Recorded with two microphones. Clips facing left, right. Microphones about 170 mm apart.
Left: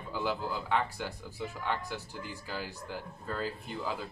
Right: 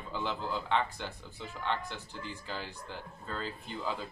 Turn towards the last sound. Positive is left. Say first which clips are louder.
# left 2 dB
turn(degrees=5)  # may be behind; listen again after turning